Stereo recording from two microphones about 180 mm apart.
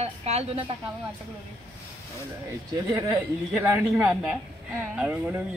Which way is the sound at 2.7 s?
15° right (ahead or behind).